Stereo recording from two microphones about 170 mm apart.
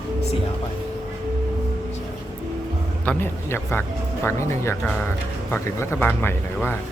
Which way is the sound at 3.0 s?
10° left (ahead or behind).